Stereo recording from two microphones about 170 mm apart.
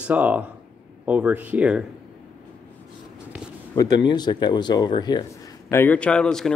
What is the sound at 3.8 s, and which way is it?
Speech, 25° left (ahead or behind).